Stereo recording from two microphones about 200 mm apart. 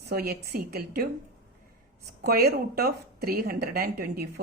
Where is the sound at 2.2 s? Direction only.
50° right (ahead or behind).